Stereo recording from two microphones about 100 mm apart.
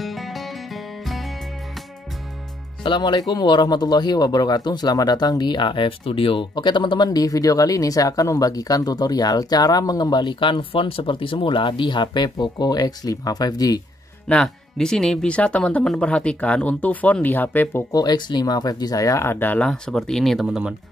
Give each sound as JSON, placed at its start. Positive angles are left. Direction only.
{"t": 0.0, "sound": "music", "side_deg": 0}
{"t": 2.8, "sound": "speech", "side_deg": 55}
{"t": 14.2, "sound": "speech", "side_deg": 10}
{"t": 17.9, "sound": "speech", "side_deg": 45}
{"t": 19.7, "sound": "speech", "side_deg": 5}
{"t": 20.4, "sound": "speech", "side_deg": -10}